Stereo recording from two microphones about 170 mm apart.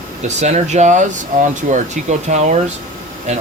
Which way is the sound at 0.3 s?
40° right (ahead or behind).